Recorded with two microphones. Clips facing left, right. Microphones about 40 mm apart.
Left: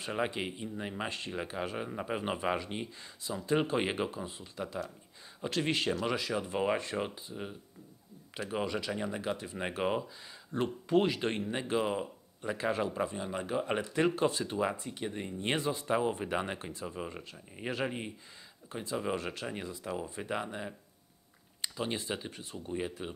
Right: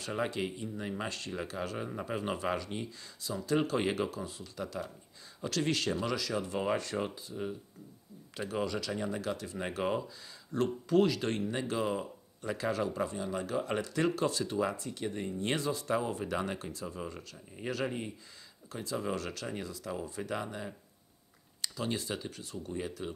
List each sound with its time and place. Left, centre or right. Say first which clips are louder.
0.0 s speech: even; left